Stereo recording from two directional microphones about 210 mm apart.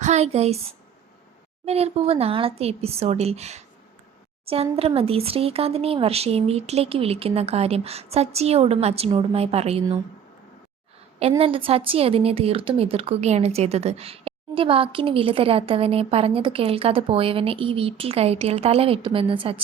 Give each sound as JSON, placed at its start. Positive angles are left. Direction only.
{"t": 0.0, "sound": "a woman's voice", "side_deg": -30}
{"t": 1.6, "sound": "a woman's voice", "side_deg": -30}
{"t": 11.2, "sound": "a woman's voice", "side_deg": -25}